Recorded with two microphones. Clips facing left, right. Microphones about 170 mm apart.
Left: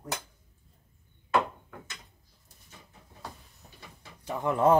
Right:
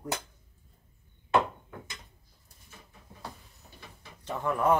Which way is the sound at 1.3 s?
20° right (ahead or behind).